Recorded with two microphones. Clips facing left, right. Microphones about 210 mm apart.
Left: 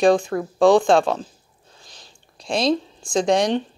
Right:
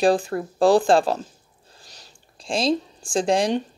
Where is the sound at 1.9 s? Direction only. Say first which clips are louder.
Left 1 dB; 35° right (ahead or behind).